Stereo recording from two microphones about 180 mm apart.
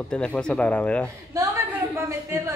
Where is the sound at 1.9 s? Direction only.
15° right (ahead or behind).